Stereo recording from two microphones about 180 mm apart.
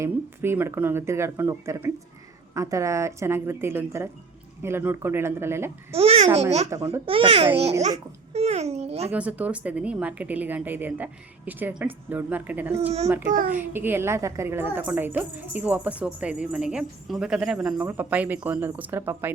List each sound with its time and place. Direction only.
0.0 s a woman's voice: 10° right (ahead or behind)
5.9 s a child's voice: 35° right (ahead or behind)
6.7 s a woman's voice: 15° right (ahead or behind)
7.0 s a child's voice: 30° right (ahead or behind)
9.1 s a woman's voice: 10° right (ahead or behind)
13.2 s a child's voice: 50° right (ahead or behind)
13.5 s a woman's voice: 10° right (ahead or behind)